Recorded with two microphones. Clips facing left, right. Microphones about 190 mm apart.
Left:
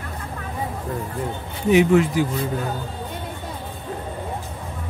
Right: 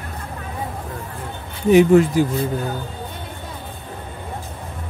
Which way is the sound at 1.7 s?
40° right (ahead or behind).